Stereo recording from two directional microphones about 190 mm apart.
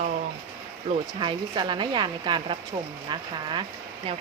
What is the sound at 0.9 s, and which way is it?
Speech, 35° right (ahead or behind).